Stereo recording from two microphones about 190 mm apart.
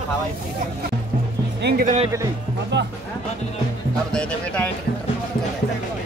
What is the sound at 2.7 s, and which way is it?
Speech, 65° right (ahead or behind).